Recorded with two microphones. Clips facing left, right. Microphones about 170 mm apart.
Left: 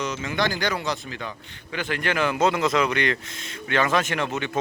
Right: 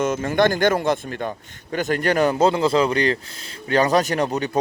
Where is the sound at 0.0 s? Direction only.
50° right (ahead or behind).